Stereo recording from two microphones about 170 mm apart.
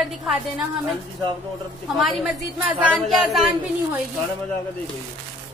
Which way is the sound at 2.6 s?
5° right (ahead or behind).